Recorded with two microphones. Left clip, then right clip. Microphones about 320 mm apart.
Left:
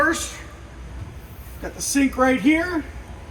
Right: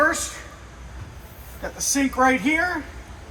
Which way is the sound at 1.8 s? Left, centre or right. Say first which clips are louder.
Even; centre.